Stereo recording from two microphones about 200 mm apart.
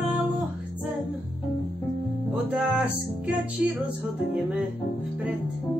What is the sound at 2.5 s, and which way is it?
Music, 5° right (ahead or behind).